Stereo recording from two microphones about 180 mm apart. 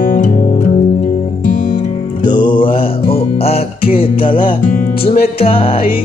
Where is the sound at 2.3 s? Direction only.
25° left (ahead or behind).